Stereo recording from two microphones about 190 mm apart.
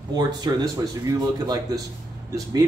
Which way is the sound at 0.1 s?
20° right (ahead or behind).